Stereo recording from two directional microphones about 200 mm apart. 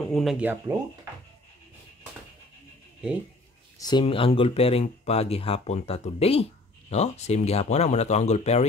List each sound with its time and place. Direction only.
0.0 s speech: centre (ahead or behind)
3.7 s speech: 20° left (ahead or behind)